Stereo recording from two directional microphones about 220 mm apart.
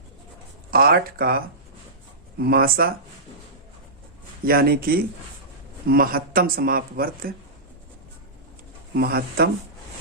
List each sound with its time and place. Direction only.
0.7 s speech: 45° right (ahead or behind)
2.4 s speech: 45° right (ahead or behind)
4.4 s speech: 45° right (ahead or behind)
9.0 s speech: 45° right (ahead or behind)